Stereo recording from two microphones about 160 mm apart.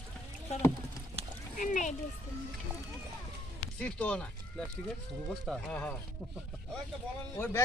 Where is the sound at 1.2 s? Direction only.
40° right (ahead or behind).